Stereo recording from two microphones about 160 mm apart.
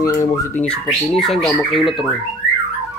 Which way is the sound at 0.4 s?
10° left (ahead or behind).